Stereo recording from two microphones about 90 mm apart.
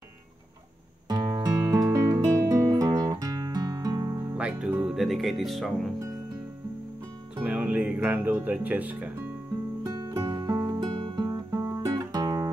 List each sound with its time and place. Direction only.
1.0 s music: 45° right (ahead or behind)
1.5 s music: 25° right (ahead or behind)
1.8 s music: 35° right (ahead or behind)
4.4 s music: 10° right (ahead or behind)
4.9 s speech: centre (ahead or behind)
7.3 s speech: 15° right (ahead or behind)
9.8 s music: 40° right (ahead or behind)
10.8 s music: 55° right (ahead or behind)
11.5 s music: 35° right (ahead or behind)